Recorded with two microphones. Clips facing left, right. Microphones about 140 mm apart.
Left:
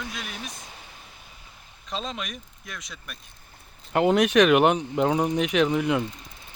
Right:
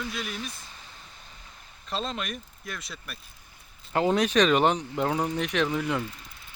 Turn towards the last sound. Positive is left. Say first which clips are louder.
# left 4 dB
turn(degrees=15)  # may be behind; listen again after turning